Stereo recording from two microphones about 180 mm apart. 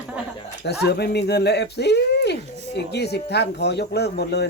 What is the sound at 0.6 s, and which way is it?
Speech, 65° left (ahead or behind).